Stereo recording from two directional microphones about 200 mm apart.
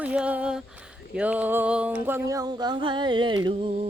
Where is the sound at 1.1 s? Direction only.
5° right (ahead or behind).